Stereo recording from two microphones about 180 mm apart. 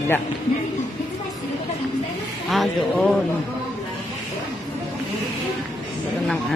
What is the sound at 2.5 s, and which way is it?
Speech, centre (ahead or behind).